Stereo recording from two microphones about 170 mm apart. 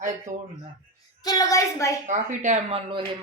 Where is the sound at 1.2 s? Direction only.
20° left (ahead or behind).